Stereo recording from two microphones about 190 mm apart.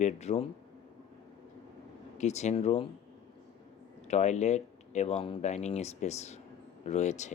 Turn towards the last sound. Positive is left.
turn(degrees=40)  # may be behind; listen again after turning